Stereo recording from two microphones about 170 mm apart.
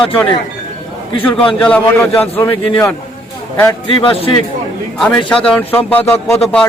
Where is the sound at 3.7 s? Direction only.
30° left (ahead or behind).